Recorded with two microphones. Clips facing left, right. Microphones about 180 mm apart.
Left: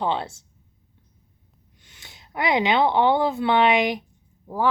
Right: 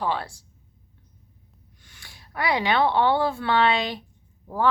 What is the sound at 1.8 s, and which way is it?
A woman's voice, 20° left (ahead or behind).